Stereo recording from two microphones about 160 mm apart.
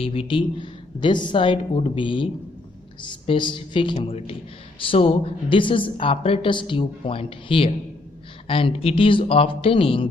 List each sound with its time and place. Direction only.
0.0 s speech: 35° left (ahead or behind)